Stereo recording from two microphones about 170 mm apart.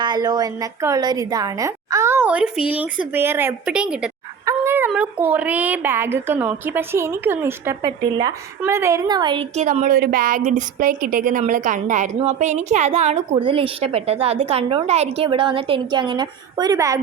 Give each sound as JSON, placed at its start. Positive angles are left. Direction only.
{"t": 0.0, "sound": "a woman's voice", "side_deg": -25}
{"t": 4.4, "sound": "a sound", "side_deg": -15}
{"t": 4.9, "sound": "a woman's voice", "side_deg": -10}
{"t": 9.6, "sound": "a woman's voice", "side_deg": -45}